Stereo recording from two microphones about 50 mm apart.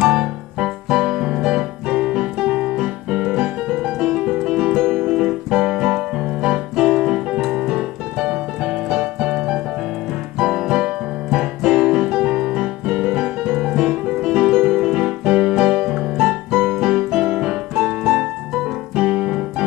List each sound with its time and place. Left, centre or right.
0.0 s keyboard: centre
7.6 s piano: centre
10.4 s keyboard: centre